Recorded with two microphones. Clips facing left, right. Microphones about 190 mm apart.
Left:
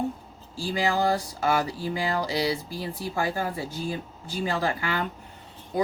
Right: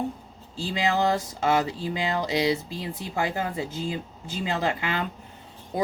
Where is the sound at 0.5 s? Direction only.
20° right (ahead or behind).